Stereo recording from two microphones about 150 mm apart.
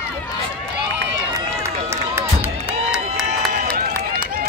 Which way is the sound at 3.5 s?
90° right.